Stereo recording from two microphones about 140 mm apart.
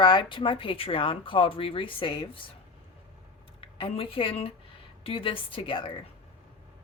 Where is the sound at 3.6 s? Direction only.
40° left (ahead or behind).